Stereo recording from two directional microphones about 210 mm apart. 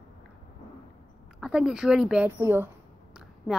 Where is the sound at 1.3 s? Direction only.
Centre (ahead or behind).